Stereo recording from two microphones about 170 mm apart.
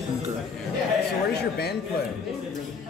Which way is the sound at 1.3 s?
70° left (ahead or behind).